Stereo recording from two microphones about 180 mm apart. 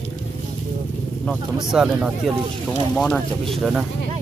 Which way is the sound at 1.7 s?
5° right (ahead or behind).